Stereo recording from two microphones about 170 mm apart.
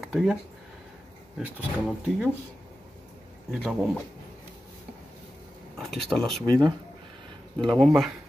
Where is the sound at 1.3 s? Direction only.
5° right (ahead or behind).